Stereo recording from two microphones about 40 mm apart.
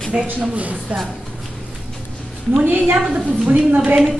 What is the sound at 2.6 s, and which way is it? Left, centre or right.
Speech, right.